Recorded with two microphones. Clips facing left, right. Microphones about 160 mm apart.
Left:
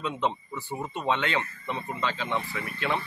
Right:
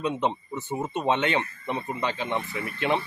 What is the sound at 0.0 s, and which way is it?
Speech, 20° right (ahead or behind).